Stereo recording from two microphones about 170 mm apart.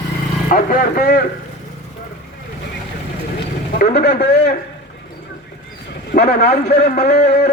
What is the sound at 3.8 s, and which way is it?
Speech, 70° left (ahead or behind).